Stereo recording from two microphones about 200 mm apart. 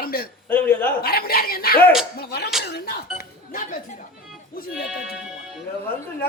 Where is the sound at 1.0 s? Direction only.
50° left (ahead or behind).